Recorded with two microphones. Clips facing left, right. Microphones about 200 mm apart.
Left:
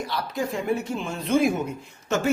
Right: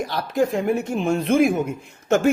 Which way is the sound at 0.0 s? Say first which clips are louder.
Right 7 dB; 45° right (ahead or behind).